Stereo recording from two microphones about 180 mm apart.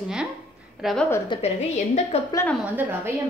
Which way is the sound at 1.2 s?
35° left (ahead or behind).